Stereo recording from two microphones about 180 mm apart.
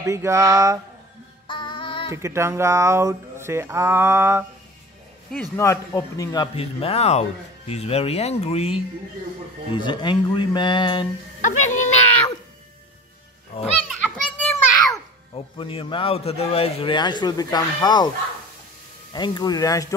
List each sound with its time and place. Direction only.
0.0 s speech: 15° right (ahead or behind)
1.5 s child singing: 25° left (ahead or behind)
2.0 s speech: 15° right (ahead or behind)
5.6 s a man's voice: 15° left (ahead or behind)
11.4 s speech: 45° left (ahead or behind)
13.5 s speech: 35° left (ahead or behind)
13.8 s children playing: 5° left (ahead or behind)
15.3 s a man's voice: 30° left (ahead or behind)
19.1 s a man's voice: 25° left (ahead or behind)